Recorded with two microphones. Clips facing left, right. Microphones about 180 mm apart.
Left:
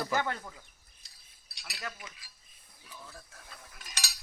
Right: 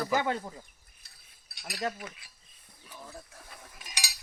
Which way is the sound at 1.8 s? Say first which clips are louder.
Right 9 dB; 40° right (ahead or behind).